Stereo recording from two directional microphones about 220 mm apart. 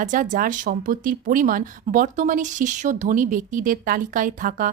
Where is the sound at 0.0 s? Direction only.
35° right (ahead or behind).